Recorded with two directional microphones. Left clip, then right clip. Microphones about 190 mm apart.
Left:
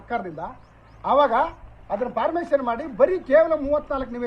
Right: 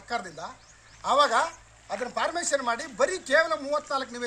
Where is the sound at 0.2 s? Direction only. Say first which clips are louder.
Left 6 dB; 10° right (ahead or behind).